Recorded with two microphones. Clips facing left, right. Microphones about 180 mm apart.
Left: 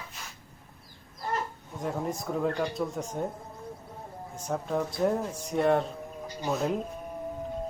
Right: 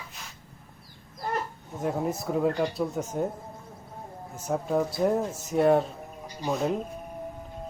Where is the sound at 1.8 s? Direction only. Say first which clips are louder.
Right 3 dB; 5° right (ahead or behind).